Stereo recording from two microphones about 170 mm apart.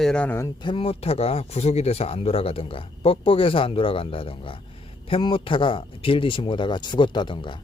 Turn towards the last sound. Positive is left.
turn(degrees=30)  # may be behind; listen again after turning